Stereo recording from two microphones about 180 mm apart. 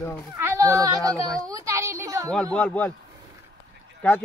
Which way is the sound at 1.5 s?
20° right (ahead or behind).